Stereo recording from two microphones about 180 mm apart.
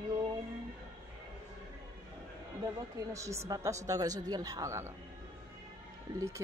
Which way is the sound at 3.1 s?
15° right (ahead or behind).